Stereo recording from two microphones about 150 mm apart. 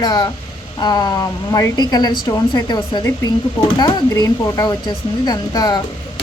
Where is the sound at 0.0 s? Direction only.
25° left (ahead or behind).